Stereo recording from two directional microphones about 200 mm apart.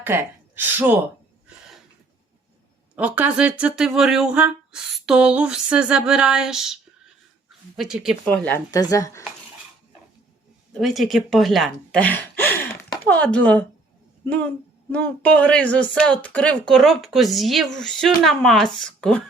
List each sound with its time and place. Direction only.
0.0 s speech: 10° right (ahead or behind)
2.9 s speech: 5° right (ahead or behind)
7.8 s speech: centre (ahead or behind)
8.4 s speech: 15° left (ahead or behind)
10.8 s speech: centre (ahead or behind)